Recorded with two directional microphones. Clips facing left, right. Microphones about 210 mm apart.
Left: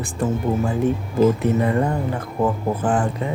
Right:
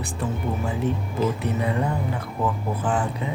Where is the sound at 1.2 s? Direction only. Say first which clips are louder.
Left 8 dB; 50° left (ahead or behind).